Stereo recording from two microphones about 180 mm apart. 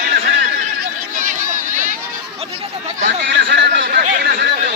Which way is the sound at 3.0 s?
85° right.